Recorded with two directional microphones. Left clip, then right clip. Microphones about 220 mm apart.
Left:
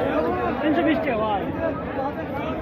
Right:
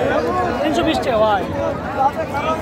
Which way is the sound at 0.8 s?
35° right (ahead or behind).